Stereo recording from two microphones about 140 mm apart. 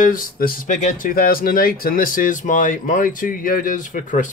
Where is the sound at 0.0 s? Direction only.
80° left.